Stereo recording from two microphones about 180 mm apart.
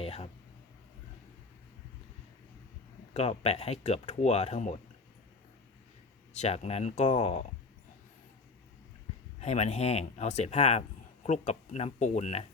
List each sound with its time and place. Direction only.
0.0 s a sound: 35° left (ahead or behind)
3.1 s speech: 35° left (ahead or behind)
6.3 s speech: 40° left (ahead or behind)
9.4 s speech: 40° left (ahead or behind)